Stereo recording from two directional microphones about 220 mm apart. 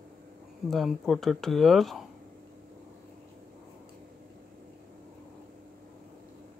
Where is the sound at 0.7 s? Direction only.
Centre (ahead or behind).